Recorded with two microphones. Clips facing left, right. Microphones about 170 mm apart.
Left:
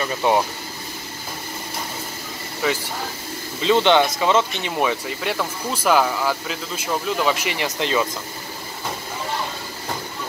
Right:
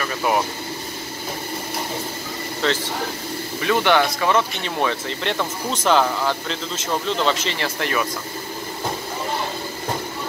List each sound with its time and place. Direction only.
0.0 s speech: 25° left (ahead or behind)
2.6 s speech: 10° left (ahead or behind)
3.6 s speech: 20° left (ahead or behind)